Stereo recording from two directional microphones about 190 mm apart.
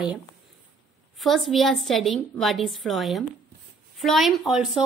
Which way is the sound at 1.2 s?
Centre (ahead or behind).